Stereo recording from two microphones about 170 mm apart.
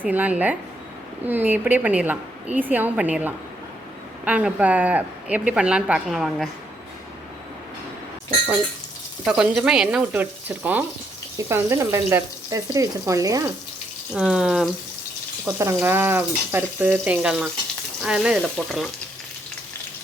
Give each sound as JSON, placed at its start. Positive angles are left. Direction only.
{"t": 0.0, "sound": "a woman's voice", "side_deg": -10}
{"t": 9.2, "sound": "a woman's voice", "side_deg": -5}
{"t": 14.1, "sound": "speech", "side_deg": -5}
{"t": 15.5, "sound": "a woman's voice", "side_deg": -15}